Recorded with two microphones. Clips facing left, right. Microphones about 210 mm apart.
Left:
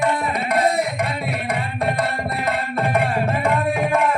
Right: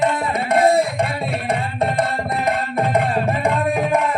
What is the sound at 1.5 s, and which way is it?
Tabla, 25° right (ahead or behind).